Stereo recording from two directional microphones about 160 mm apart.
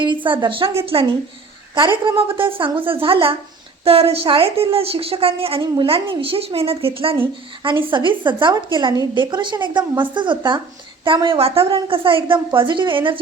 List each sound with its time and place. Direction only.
0.0 s a woman's voice: 30° right (ahead or behind)